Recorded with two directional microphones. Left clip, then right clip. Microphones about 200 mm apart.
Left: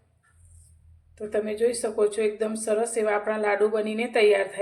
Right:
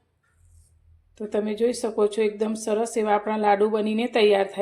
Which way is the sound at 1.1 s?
35° right (ahead or behind).